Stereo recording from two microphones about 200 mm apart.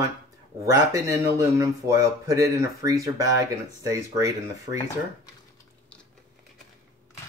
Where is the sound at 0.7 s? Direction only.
15° right (ahead or behind).